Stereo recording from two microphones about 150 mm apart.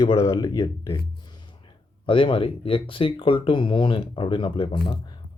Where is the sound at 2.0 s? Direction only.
35° left (ahead or behind).